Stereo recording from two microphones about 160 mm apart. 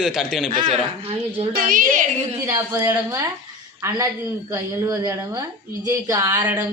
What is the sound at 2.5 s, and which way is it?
A woman's voice, 20° right (ahead or behind).